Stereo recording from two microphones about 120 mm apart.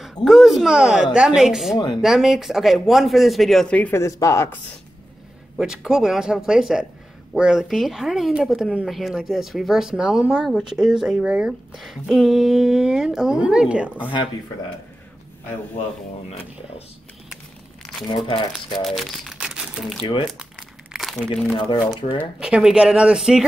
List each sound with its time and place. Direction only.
0.1 s speech: centre (ahead or behind)
3.9 s speech: 25° left (ahead or behind)
5.6 s speech: 5° right (ahead or behind)
18.0 s speech: 45° left (ahead or behind)
18.9 s crumpling: centre (ahead or behind)
20.0 s speech: 45° left (ahead or behind)
20.9 s crumpling: centre (ahead or behind)
21.5 s speech: 45° left (ahead or behind)
22.4 s speech: 5° right (ahead or behind)